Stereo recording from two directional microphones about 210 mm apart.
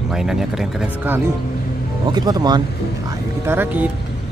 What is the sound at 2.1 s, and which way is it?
Speech, 20° right (ahead or behind).